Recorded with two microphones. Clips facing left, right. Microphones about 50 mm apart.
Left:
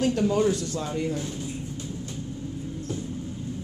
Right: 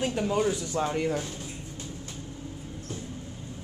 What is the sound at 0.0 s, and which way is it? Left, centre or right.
Speech, centre.